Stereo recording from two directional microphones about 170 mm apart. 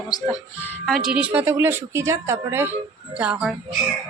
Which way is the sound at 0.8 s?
Centre (ahead or behind).